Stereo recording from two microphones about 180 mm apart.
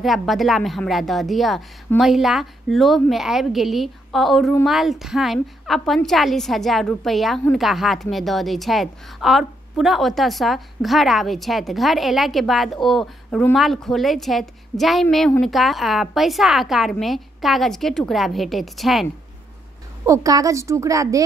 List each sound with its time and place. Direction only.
0.0 s a woman's voice: centre (ahead or behind)
20.1 s a woman's voice: 20° right (ahead or behind)